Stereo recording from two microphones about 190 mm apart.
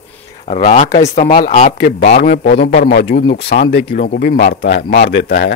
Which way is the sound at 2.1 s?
35° left (ahead or behind).